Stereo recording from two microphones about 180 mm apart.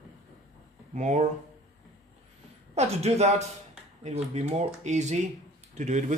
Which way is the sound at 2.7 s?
35° right (ahead or behind).